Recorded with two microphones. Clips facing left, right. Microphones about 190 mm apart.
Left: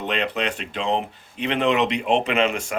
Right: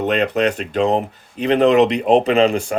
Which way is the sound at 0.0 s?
45° right (ahead or behind).